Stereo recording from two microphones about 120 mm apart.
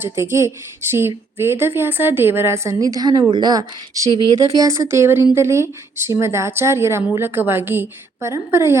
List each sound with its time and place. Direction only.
0.0 s speech: 20° right (ahead or behind)